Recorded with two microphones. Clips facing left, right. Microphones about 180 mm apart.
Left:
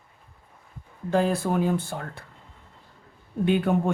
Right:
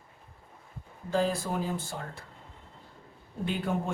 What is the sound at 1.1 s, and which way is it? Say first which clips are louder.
Speech: left 5 dB; 60° left (ahead or behind).